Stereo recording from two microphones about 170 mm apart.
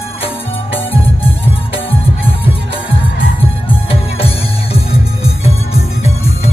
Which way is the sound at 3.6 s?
35° left (ahead or behind).